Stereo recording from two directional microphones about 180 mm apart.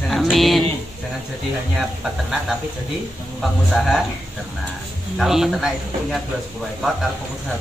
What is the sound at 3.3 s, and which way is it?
Speech, centre (ahead or behind).